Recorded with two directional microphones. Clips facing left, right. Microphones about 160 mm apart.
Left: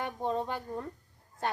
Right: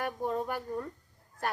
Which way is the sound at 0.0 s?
25° left (ahead or behind).